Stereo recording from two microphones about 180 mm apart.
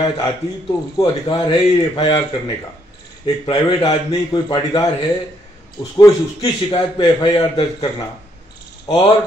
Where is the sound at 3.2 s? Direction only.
30° left (ahead or behind).